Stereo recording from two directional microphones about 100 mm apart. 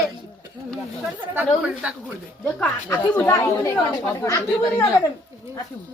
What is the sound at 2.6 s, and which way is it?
Speech, 15° left (ahead or behind).